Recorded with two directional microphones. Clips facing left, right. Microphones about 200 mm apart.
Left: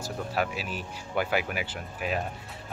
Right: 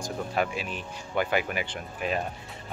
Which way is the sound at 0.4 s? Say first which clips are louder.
Right 1 dB; 5° left (ahead or behind).